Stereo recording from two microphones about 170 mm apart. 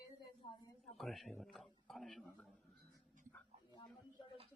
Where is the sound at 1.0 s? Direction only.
Centre (ahead or behind).